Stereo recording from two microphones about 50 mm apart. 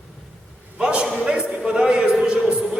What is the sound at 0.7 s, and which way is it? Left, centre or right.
Speech, right.